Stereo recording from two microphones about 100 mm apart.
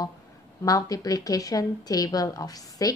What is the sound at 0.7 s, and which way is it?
A woman's voice, 35° left (ahead or behind).